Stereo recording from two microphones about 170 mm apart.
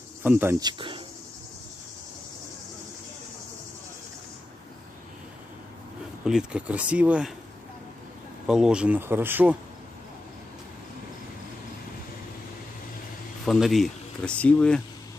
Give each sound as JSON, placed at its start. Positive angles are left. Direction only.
{"t": 0.2, "sound": "speech", "side_deg": -10}
{"t": 0.6, "sound": "speech", "side_deg": -25}
{"t": 6.2, "sound": "speech", "side_deg": -5}
{"t": 8.5, "sound": "speech", "side_deg": -5}
{"t": 13.5, "sound": "speech", "side_deg": 0}